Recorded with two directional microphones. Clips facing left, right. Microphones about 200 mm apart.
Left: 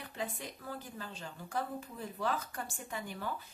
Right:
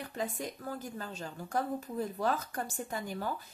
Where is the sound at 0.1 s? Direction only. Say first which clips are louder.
Right 3 dB; 45° right (ahead or behind).